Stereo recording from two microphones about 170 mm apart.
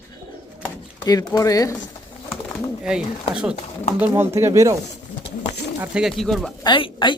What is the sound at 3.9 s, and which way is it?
Speech, 10° right (ahead or behind).